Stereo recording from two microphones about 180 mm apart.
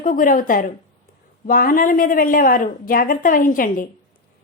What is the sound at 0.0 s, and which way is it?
A woman's voice, 50° left (ahead or behind).